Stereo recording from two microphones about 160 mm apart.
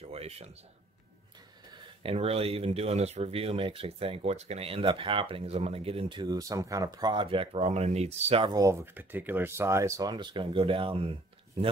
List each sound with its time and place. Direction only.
0.0 s a sound: 40° right (ahead or behind)
2.0 s speech: 40° right (ahead or behind)
8.5 s speech: 20° right (ahead or behind)